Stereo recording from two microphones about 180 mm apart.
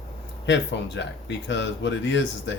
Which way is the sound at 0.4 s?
80° left.